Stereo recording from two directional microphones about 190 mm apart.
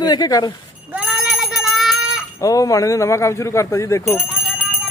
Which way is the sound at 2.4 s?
15° left (ahead or behind).